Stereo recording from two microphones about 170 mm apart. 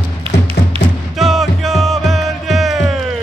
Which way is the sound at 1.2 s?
Centre (ahead or behind).